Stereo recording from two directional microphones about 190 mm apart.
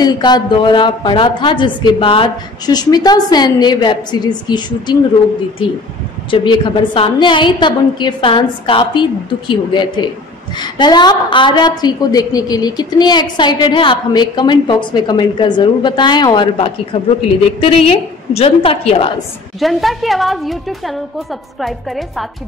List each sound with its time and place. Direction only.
0.0 s a woman's voice: 20° left (ahead or behind)
6.3 s a woman's voice: 25° left (ahead or behind)
19.6 s a woman's voice: centre (ahead or behind)